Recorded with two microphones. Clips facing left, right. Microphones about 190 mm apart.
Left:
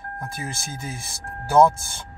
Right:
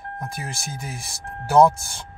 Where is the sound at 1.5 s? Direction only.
15° right (ahead or behind).